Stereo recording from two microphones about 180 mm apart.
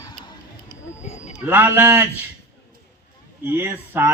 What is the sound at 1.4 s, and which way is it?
Speech, 10° right (ahead or behind).